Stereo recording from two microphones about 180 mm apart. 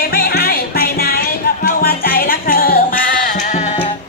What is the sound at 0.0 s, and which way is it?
Music, 60° left (ahead or behind).